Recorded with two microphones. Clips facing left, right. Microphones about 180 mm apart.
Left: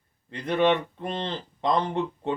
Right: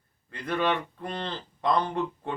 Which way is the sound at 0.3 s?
20° left (ahead or behind).